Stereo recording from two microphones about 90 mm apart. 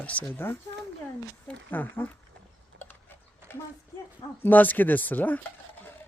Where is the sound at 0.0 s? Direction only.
15° left (ahead or behind).